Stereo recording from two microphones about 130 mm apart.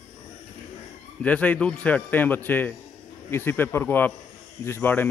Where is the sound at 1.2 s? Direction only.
10° left (ahead or behind).